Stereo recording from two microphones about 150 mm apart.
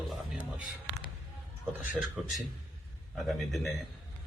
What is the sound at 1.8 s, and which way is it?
Speech, 10° right (ahead or behind).